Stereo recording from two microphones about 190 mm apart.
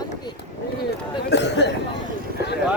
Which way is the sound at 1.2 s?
65° left (ahead or behind).